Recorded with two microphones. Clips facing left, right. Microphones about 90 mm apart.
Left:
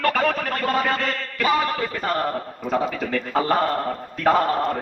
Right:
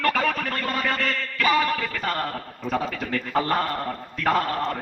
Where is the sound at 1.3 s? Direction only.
30° left (ahead or behind).